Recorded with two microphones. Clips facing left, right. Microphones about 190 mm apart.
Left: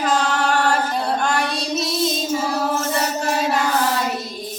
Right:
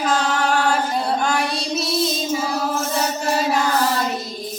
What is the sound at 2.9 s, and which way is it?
Child singing, centre (ahead or behind).